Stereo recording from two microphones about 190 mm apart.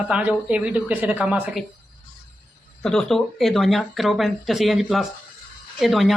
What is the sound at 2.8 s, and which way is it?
Speech, 5° left (ahead or behind).